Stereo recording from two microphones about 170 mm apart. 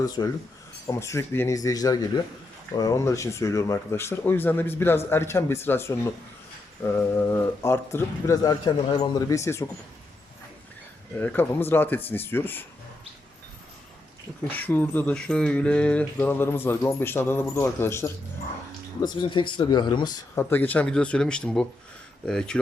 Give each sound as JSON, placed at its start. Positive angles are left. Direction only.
{"t": 0.2, "sound": "speech", "side_deg": 25}
{"t": 11.2, "sound": "speech", "side_deg": 10}
{"t": 14.4, "sound": "speech", "side_deg": 10}
{"t": 19.0, "sound": "speech", "side_deg": 25}
{"t": 20.3, "sound": "speech", "side_deg": 10}